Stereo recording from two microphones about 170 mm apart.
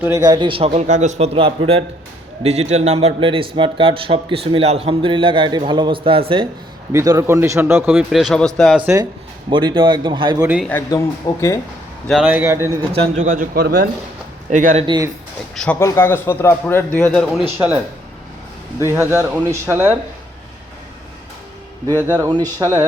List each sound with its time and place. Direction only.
0.0 s a man's voice: 20° right (ahead or behind)
6.9 s a man's voice: 20° right (ahead or behind)
7.9 s speech: centre (ahead or behind)
9.5 s a man's voice: 30° right (ahead or behind)
10.4 s a man's voice: 5° right (ahead or behind)
10.7 s a man's voice: 15° left (ahead or behind)
12.2 s a man's voice: 10° right (ahead or behind)
12.9 s a man's voice: 45° right (ahead or behind); by 13.9 s 60° right (ahead or behind)
14.5 s speech: 45° right (ahead or behind)
14.8 s a man's voice: 25° right (ahead or behind)
15.5 s a man's voice: 5° left (ahead or behind)
18.9 s a man's voice: 15° right (ahead or behind)
22.3 s a man's voice: 20° right (ahead or behind)